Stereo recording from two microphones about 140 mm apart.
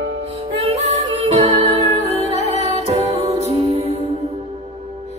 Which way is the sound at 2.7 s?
50° right (ahead or behind).